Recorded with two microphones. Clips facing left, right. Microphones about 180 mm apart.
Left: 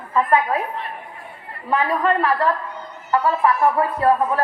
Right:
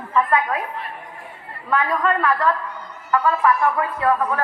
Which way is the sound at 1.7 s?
30° left (ahead or behind).